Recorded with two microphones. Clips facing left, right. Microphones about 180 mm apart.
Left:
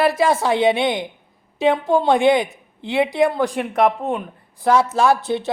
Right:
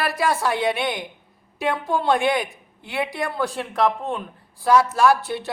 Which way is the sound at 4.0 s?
5° left (ahead or behind).